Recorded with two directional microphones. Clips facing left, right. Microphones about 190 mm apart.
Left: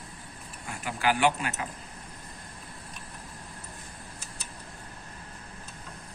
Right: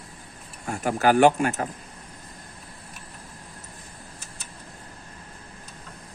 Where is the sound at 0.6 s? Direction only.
45° right (ahead or behind).